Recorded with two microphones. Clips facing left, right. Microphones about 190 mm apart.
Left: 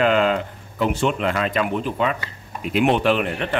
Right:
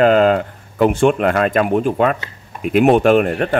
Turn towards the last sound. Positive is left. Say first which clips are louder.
# right 7 dB
turn(degrees=-45)  # may be behind; listen again after turning